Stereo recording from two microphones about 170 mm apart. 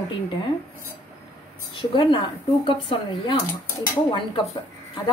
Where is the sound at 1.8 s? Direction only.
30° left (ahead or behind).